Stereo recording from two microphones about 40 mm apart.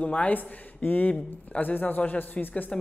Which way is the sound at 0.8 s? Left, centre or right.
Left.